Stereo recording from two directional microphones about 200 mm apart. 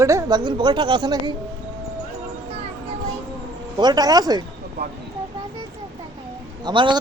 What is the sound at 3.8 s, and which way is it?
Speech, 20° right (ahead or behind).